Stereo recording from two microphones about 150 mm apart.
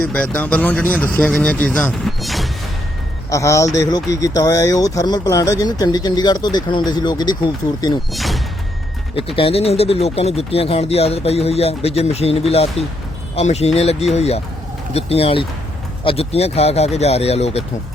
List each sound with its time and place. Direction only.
0.1 s speech: 10° left (ahead or behind)
3.2 s speech: 20° left (ahead or behind)
8.1 s speech: centre (ahead or behind)
9.1 s speech: 40° left (ahead or behind)